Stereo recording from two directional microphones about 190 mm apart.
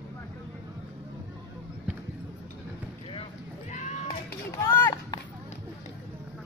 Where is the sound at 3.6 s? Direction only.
40° left (ahead or behind).